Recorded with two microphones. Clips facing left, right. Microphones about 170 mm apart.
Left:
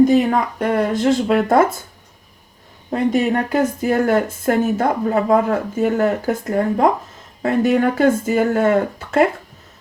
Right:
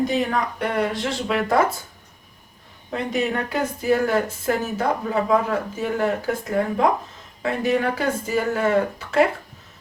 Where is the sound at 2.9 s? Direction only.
45° left (ahead or behind).